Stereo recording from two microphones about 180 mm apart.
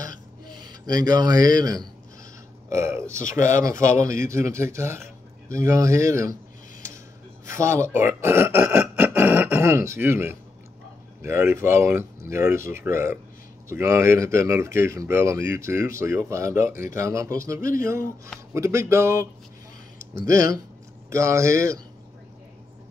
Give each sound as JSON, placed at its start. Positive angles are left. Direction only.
{"t": 0.0, "sound": "a sound", "side_deg": -25}
{"t": 2.7, "sound": "speech", "side_deg": -15}
{"t": 7.4, "sound": "speech", "side_deg": -15}
{"t": 20.2, "sound": "speech", "side_deg": -15}